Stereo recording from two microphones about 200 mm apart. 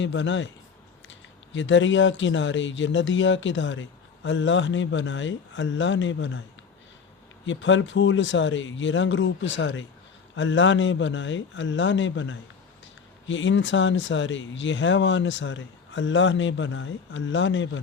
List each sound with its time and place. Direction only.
0.0 s speech: 65° left (ahead or behind)
1.5 s speech: 70° left (ahead or behind)
7.4 s speech: 70° left (ahead or behind)